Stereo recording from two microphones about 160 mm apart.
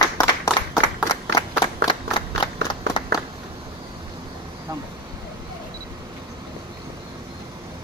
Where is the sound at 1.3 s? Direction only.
30° left (ahead or behind).